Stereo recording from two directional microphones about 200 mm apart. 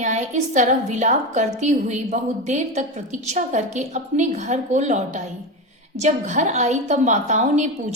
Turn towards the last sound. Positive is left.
turn(degrees=-35)  # may be behind; listen again after turning